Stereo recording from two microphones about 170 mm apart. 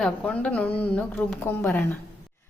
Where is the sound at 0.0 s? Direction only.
5° left (ahead or behind).